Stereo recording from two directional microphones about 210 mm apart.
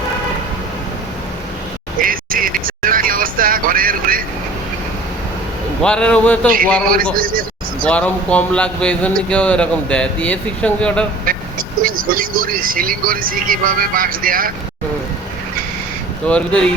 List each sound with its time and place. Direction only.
2.0 s vehicle: 40° right (ahead or behind)
5.8 s speech: 5° left (ahead or behind)
6.9 s speech: 40° right (ahead or behind)
7.9 s speech: 5° left (ahead or behind)
11.3 s vehicle: 40° right (ahead or behind)
12.1 s speech: 40° right (ahead or behind)
16.2 s speech: 5° left (ahead or behind)